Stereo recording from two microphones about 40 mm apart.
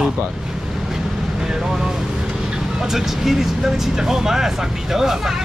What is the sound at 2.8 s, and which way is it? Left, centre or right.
Speech, centre.